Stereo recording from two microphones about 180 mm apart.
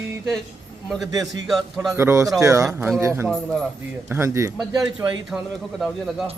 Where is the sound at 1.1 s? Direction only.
20° right (ahead or behind).